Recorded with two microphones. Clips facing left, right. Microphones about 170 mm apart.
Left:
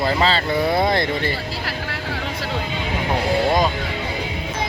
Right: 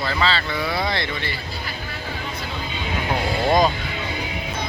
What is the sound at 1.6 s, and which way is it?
Vehicle, 90° left.